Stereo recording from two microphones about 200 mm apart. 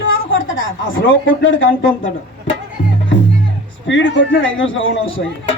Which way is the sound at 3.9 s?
70° left (ahead or behind).